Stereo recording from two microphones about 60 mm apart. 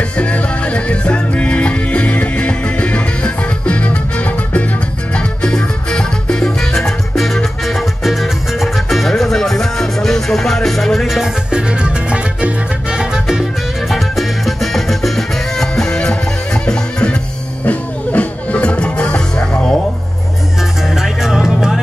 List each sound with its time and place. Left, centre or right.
0.2 s music: left
5.1 s salsa music: centre
11.5 s music: centre
20.9 s music: centre